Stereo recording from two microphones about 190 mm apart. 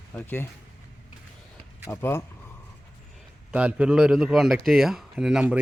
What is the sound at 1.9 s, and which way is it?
Speech, 15° left (ahead or behind).